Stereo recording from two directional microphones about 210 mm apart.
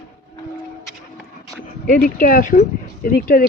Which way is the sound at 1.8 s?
40° left (ahead or behind).